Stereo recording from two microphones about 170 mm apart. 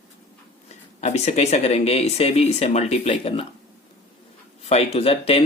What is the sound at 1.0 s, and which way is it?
Speech, 40° left (ahead or behind).